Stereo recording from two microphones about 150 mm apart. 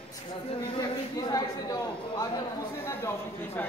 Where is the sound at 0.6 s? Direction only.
30° left (ahead or behind).